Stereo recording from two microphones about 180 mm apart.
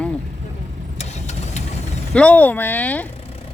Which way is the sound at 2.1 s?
10° left (ahead or behind).